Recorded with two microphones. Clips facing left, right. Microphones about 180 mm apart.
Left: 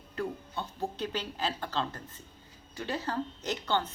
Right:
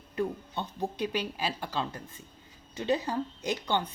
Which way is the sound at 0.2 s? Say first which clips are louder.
Right 3 dB; 15° right (ahead or behind).